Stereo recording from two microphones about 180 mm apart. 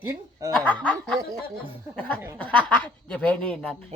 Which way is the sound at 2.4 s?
10° left (ahead or behind).